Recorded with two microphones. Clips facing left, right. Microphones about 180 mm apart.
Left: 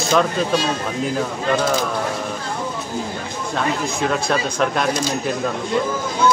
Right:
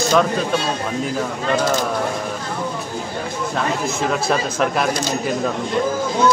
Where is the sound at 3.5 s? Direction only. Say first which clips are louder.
Left 1 dB; 5° right (ahead or behind).